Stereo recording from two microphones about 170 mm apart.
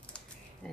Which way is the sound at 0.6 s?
5° left (ahead or behind).